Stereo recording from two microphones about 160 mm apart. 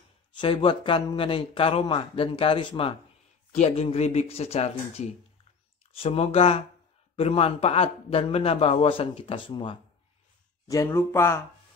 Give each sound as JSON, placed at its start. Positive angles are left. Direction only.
{"t": 0.4, "sound": "a man's voice", "side_deg": 30}
{"t": 10.7, "sound": "speech", "side_deg": 20}